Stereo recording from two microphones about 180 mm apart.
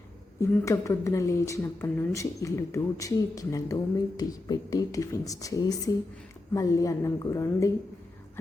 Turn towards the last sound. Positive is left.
turn(degrees=20)  # may be behind; listen again after turning